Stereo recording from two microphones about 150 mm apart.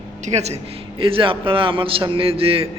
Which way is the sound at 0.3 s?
45° right (ahead or behind).